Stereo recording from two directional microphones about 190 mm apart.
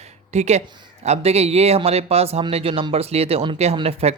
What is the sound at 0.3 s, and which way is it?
Speech, 35° right (ahead or behind).